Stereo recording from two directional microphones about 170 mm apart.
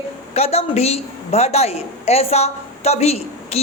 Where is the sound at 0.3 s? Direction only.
35° left (ahead or behind).